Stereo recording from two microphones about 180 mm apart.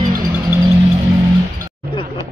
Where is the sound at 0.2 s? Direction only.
15° right (ahead or behind).